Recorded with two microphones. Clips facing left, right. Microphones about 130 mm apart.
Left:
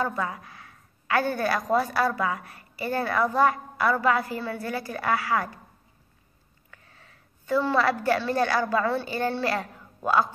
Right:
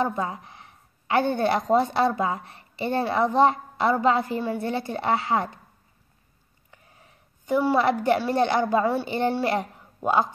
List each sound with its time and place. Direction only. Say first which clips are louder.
0.0 s a woman's voice: right 2 dB; 25° right (ahead or behind)
6.7 s a woman's voice: right 1 dB; 20° right (ahead or behind)